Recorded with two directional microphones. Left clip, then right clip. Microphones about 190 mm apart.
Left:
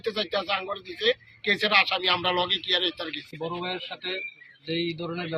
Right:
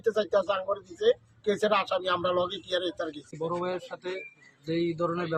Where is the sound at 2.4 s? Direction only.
25° left (ahead or behind).